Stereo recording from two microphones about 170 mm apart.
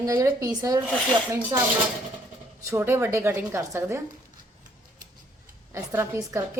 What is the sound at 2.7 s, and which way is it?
A woman's voice, 15° right (ahead or behind).